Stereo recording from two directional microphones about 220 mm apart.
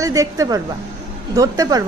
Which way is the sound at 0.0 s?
15° right (ahead or behind).